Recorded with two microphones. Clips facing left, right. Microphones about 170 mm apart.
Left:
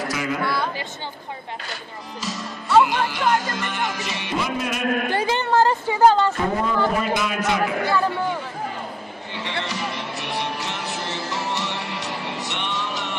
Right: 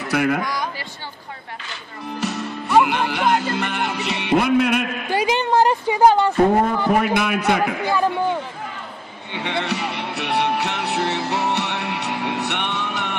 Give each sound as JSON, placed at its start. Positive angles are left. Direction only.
{"t": 0.1, "sound": "a man's voice", "side_deg": -60}
{"t": 0.4, "sound": "speech", "side_deg": -15}
{"t": 2.0, "sound": "speech", "side_deg": -60}
{"t": 2.8, "sound": "music", "side_deg": -60}
{"t": 5.1, "sound": "a woman's voice", "side_deg": -15}
{"t": 6.9, "sound": "music", "side_deg": -60}
{"t": 7.8, "sound": "a woman's voice", "side_deg": -15}
{"t": 9.3, "sound": "music", "side_deg": -60}